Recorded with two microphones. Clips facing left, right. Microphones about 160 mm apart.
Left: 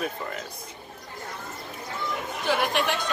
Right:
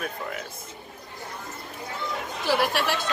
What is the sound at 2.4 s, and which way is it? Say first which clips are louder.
Speech: right 1 dB; 5° right (ahead or behind).